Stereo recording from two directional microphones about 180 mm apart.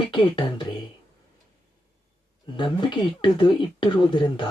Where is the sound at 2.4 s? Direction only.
25° left (ahead or behind).